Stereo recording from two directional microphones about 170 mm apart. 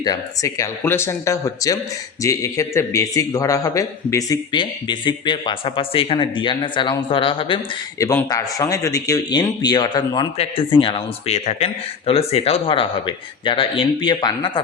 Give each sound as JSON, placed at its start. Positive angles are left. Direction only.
{"t": 0.0, "sound": "a man's voice", "side_deg": 20}
{"t": 7.9, "sound": "a man's voice", "side_deg": 20}
{"t": 10.3, "sound": "a man's voice", "side_deg": 35}